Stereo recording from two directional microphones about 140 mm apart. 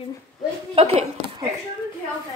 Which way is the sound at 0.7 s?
45° right (ahead or behind).